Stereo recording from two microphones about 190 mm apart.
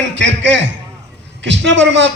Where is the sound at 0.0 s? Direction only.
70° right (ahead or behind).